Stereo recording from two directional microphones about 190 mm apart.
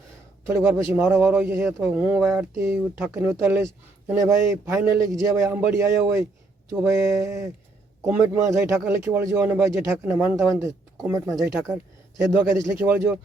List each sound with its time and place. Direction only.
0.4 s a man's voice: 10° right (ahead or behind)
2.2 s a sound: centre (ahead or behind)
2.6 s a man's voice: 10° right (ahead or behind)